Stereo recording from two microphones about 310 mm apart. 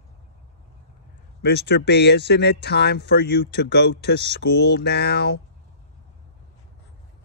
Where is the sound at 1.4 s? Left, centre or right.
Left.